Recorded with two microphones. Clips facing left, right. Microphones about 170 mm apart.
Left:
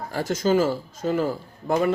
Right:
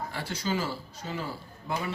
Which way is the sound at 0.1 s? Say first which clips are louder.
Left 14 dB; 45° left (ahead or behind).